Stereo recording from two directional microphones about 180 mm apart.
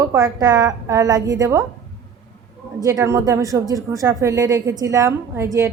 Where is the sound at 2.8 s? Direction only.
20° right (ahead or behind).